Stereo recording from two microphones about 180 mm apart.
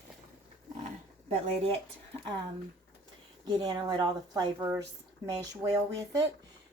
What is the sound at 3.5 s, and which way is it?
Speech, 20° right (ahead or behind).